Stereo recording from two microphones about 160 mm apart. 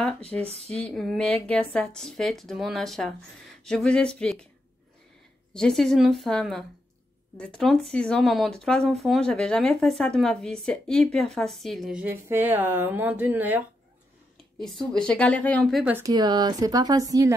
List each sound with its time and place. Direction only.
0.3 s a woman's voice: 10° left (ahead or behind)
5.5 s speech: 5° left (ahead or behind)
15.0 s speech: 5° left (ahead or behind)
16.0 s speech: 25° right (ahead or behind)